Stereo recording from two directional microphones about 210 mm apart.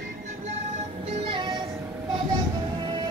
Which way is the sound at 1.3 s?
20° right (ahead or behind).